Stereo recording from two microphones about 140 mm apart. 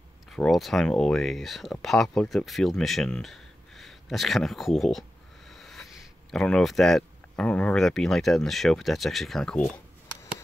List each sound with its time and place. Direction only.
0.3 s speech: centre (ahead or behind)